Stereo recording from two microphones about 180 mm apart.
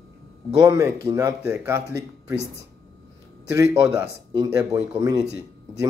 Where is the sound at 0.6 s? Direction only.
15° right (ahead or behind).